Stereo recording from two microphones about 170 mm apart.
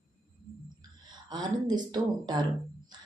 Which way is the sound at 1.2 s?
25° right (ahead or behind).